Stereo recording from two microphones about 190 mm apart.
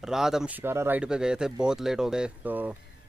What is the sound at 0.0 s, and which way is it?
Speech, 5° right (ahead or behind).